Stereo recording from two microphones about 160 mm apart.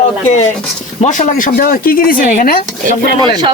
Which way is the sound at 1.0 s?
50° left (ahead or behind).